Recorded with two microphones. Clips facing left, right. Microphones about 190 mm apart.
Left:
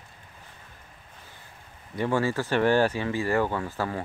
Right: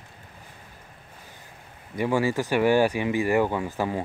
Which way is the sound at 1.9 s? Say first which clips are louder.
Right 2 dB; 10° right (ahead or behind).